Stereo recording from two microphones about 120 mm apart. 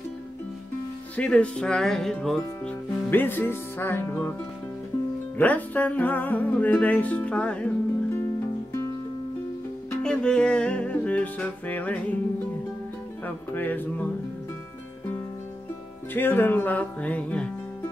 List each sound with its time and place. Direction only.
1.1 s music: 10° left (ahead or behind)
5.4 s music: 15° left (ahead or behind)
10.0 s music: 10° left (ahead or behind)
13.2 s music: 15° left (ahead or behind)
16.1 s music: 15° left (ahead or behind)